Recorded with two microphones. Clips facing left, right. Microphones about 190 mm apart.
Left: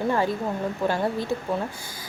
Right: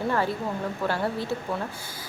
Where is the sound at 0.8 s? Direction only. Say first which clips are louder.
Left 3 dB; 15° left (ahead or behind).